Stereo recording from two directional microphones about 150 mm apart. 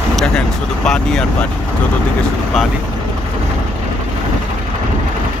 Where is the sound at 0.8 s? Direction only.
5° left (ahead or behind).